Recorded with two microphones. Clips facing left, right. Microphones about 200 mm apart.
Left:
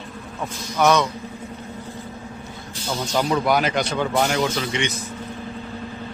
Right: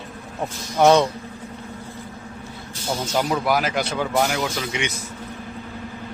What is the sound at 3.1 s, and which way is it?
Speech, 5° right (ahead or behind).